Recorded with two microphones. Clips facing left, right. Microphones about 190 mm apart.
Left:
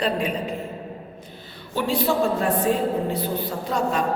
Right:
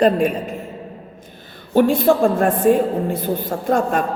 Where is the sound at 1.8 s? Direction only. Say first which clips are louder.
Right 8 dB; 50° right (ahead or behind).